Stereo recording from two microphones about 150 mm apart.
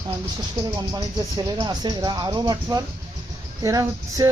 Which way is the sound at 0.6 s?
25° right (ahead or behind).